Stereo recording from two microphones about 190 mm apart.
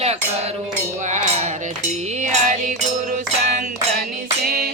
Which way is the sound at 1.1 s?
35° right (ahead or behind).